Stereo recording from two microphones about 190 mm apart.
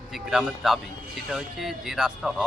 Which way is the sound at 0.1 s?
Centre (ahead or behind).